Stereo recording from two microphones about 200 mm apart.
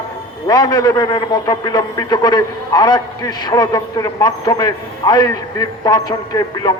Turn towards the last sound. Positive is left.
turn(degrees=20)  # may be behind; listen again after turning